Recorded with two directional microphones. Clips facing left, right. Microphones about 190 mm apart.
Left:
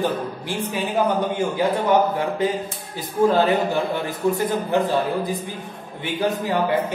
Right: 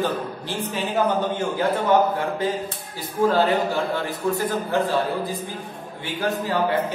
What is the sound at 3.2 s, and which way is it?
A man's voice, 20° left (ahead or behind).